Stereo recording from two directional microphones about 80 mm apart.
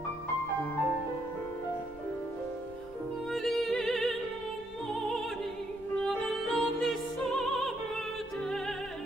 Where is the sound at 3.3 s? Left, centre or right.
Centre.